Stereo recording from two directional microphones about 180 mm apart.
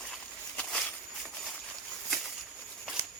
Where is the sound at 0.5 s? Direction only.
5° left (ahead or behind).